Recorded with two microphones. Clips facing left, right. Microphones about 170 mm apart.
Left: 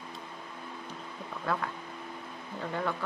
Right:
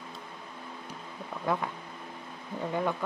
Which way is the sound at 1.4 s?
20° right (ahead or behind).